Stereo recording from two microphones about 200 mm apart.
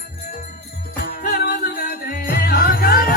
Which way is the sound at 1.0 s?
50° left (ahead or behind).